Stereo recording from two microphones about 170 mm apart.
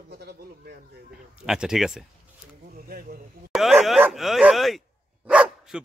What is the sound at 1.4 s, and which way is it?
Speech, 5° right (ahead or behind).